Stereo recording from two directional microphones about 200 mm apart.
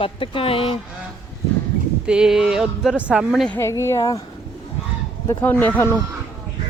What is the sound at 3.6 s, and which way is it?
Speech, 15° left (ahead or behind).